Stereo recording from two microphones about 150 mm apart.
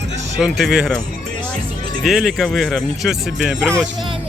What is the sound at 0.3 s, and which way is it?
Speech, centre (ahead or behind).